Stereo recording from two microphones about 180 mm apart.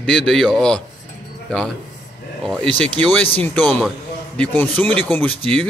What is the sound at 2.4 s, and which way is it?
Speech, 5° left (ahead or behind).